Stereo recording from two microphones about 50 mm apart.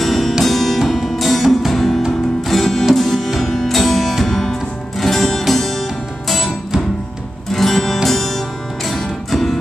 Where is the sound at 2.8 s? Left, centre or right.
Centre.